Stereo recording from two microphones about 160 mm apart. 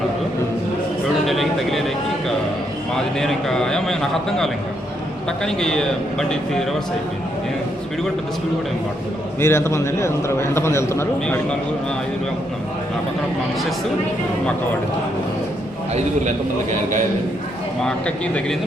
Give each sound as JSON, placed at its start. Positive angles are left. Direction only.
{"t": 1.2, "sound": "vehicle", "side_deg": 0}
{"t": 3.2, "sound": "a man's voice", "side_deg": 0}
{"t": 9.4, "sound": "a man's voice", "side_deg": 15}
{"t": 17.8, "sound": "a man's voice", "side_deg": 5}